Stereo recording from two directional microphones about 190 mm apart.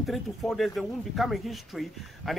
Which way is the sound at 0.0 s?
Centre (ahead or behind).